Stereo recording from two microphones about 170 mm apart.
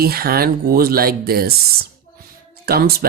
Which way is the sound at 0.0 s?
60° right (ahead or behind).